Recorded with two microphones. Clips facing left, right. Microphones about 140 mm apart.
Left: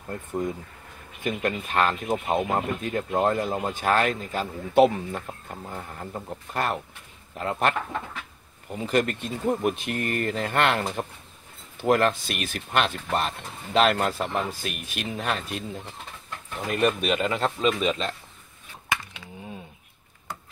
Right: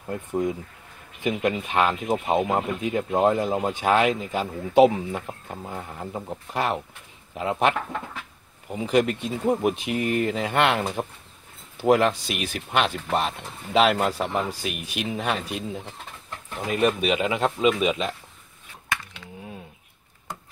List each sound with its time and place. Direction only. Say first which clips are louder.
0.1 s speech: right 3 dB; 10° right (ahead or behind)
8.8 s speech: right 3 dB; 5° right (ahead or behind)
18.9 s a sound: left 1 dB; centre (ahead or behind)